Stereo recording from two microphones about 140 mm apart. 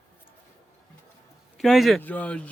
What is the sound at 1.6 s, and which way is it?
Speech, centre (ahead or behind).